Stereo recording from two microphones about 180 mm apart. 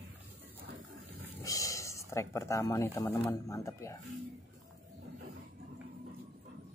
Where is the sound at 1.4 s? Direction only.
20° left (ahead or behind).